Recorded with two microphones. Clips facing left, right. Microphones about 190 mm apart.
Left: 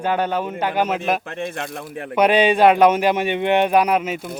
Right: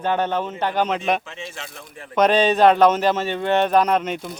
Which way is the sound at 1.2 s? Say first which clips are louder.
Left 8 dB; 55° left (ahead or behind).